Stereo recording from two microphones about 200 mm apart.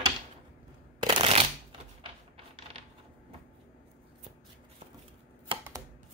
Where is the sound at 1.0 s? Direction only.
25° right (ahead or behind).